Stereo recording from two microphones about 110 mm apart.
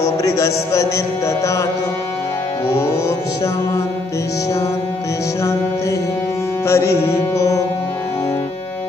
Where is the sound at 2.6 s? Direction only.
25° left (ahead or behind).